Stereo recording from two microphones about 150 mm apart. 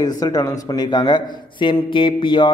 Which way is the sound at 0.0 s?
25° left (ahead or behind).